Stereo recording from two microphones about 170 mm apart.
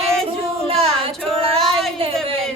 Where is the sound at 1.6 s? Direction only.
Centre (ahead or behind).